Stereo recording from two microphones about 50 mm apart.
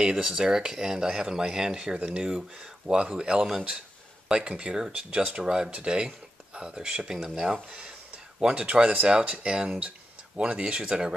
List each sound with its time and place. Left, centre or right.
0.0 s speech: centre